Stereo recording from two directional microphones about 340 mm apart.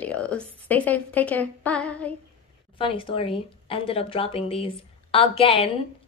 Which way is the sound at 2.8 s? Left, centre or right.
Centre.